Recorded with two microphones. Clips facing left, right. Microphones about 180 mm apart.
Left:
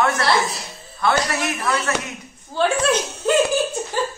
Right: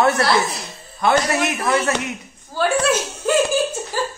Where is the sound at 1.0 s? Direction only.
20° right (ahead or behind).